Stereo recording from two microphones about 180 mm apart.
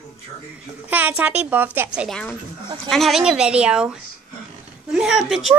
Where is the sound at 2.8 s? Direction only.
Centre (ahead or behind).